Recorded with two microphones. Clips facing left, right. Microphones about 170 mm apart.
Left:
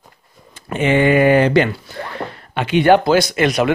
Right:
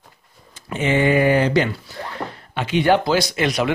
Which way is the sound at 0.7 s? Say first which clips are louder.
Left 4 dB; 60° left (ahead or behind).